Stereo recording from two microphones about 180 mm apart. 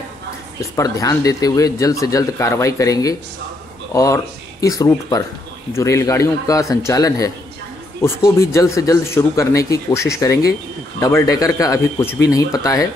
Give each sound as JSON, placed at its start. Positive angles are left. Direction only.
{"t": 0.6, "sound": "speech", "side_deg": 15}